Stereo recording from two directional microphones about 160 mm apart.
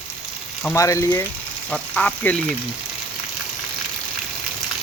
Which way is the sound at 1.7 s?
5° left (ahead or behind).